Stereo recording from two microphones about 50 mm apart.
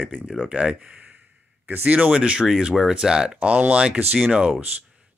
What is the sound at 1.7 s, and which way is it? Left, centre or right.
Speech, right.